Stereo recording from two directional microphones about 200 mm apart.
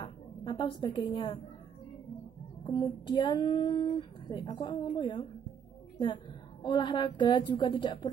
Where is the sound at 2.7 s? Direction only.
20° left (ahead or behind).